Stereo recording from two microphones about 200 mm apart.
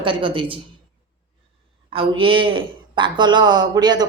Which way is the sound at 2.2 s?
25° right (ahead or behind).